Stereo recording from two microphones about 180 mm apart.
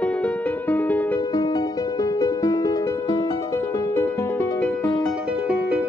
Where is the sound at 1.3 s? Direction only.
20° left (ahead or behind).